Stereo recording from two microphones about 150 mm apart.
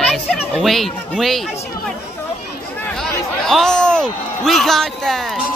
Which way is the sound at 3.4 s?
5° left (ahead or behind).